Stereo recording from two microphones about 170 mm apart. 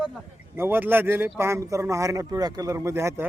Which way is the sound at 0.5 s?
15° right (ahead or behind).